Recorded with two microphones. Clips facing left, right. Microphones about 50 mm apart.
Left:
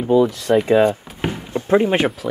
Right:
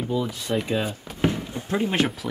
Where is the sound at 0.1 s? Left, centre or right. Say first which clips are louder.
Left 13 dB; left.